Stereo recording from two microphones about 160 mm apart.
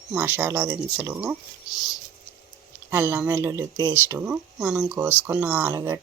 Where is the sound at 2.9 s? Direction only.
15° right (ahead or behind).